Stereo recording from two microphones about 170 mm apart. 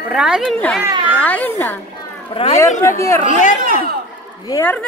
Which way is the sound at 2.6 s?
15° left (ahead or behind).